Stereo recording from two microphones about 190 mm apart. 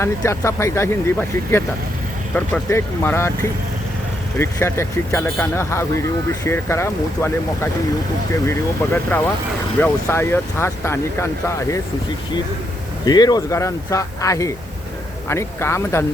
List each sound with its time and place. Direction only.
0.0 s speech: 15° left (ahead or behind)
4.4 s speech: 15° left (ahead or behind)
13.1 s speech: 20° left (ahead or behind)